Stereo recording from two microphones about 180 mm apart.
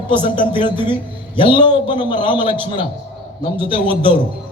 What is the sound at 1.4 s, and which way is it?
A man's voice, 25° left (ahead or behind).